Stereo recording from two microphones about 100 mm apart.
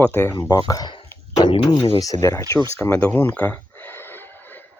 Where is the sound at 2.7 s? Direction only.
20° left (ahead or behind).